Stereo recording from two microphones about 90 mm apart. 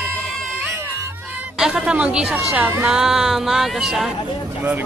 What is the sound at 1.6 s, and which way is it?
A woman's voice, 10° right (ahead or behind).